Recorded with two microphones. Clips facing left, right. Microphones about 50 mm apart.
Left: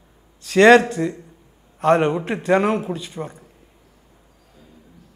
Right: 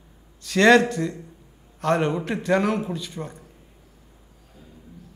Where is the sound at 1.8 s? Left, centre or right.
Left.